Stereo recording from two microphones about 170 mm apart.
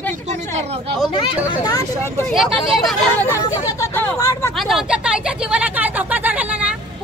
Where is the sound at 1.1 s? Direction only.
20° left (ahead or behind).